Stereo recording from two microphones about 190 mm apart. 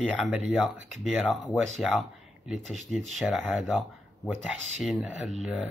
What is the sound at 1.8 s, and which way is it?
Speech, centre (ahead or behind).